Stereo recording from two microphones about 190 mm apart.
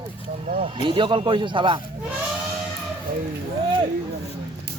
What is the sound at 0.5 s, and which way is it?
Speech, 25° right (ahead or behind).